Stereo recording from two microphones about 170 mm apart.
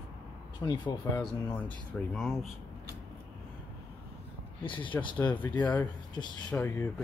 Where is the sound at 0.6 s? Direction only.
25° left (ahead or behind).